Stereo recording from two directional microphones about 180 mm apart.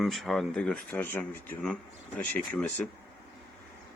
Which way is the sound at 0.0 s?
Centre (ahead or behind).